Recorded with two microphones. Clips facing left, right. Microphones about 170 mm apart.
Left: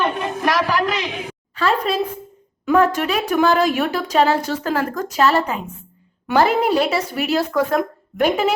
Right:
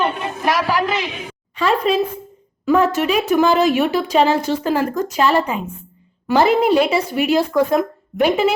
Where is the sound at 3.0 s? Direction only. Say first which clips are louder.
Right 3 dB; 10° right (ahead or behind).